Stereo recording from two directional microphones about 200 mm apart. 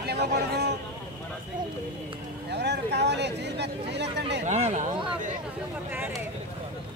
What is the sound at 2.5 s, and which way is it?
Speech, 60° right (ahead or behind).